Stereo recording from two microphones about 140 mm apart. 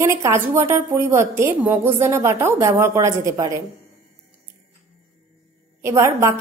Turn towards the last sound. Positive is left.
turn(degrees=-20)  # may be behind; listen again after turning